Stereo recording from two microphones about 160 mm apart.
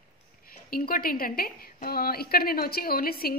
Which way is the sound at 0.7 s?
65° left (ahead or behind).